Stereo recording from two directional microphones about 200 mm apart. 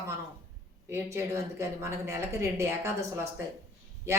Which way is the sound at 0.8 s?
15° right (ahead or behind).